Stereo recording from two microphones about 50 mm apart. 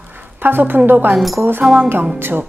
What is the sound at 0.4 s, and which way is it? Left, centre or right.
Speech, right.